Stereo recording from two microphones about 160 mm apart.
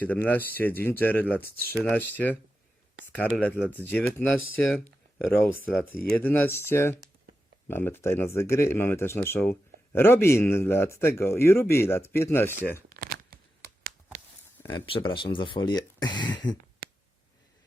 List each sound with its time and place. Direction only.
0.0 s speech: 10° left (ahead or behind)
12.9 s a sound: 70° right (ahead or behind)
14.7 s speech: 35° left (ahead or behind)